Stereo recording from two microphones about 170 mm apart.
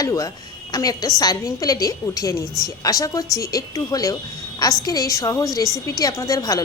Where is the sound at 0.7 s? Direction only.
20° left (ahead or behind).